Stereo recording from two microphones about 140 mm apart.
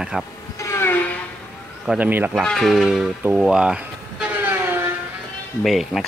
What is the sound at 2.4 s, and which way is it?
Speech, centre (ahead or behind).